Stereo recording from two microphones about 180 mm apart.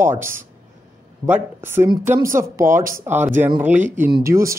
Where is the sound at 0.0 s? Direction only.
15° right (ahead or behind).